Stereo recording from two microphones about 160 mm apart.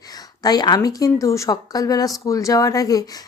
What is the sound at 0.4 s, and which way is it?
Speech, 25° left (ahead or behind).